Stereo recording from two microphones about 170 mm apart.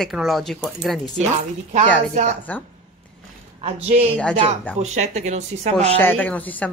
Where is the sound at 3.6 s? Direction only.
40° right (ahead or behind).